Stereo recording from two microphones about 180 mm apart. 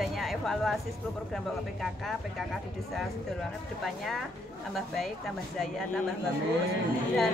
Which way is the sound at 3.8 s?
Centre (ahead or behind).